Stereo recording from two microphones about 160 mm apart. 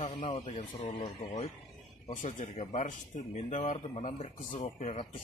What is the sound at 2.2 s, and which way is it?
Speech, 50° left (ahead or behind).